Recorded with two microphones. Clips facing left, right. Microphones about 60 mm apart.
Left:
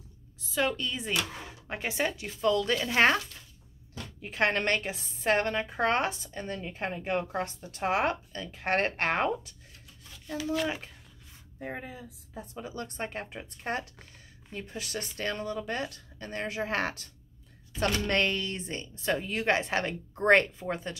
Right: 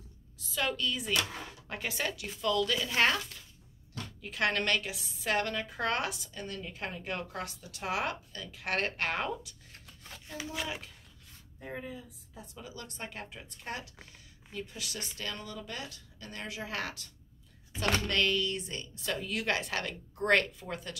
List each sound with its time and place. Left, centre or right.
0.6 s a woman's voice: left
9.7 s a sound: right
11.6 s a woman's voice: left